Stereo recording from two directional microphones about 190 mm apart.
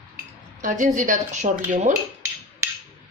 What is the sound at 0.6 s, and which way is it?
Speech, 40° right (ahead or behind).